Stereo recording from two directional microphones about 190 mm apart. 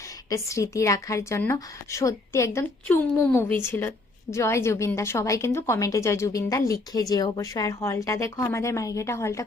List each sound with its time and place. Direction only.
0.3 s a woman's voice: 15° left (ahead or behind)